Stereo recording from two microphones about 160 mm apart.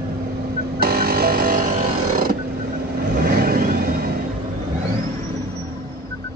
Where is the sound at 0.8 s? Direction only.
70° right (ahead or behind).